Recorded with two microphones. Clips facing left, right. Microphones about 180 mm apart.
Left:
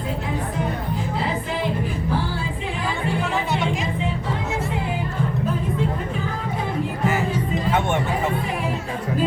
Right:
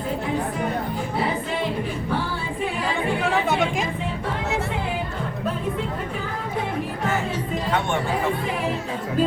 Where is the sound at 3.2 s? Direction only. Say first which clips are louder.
Right 2 dB; 50° right (ahead or behind).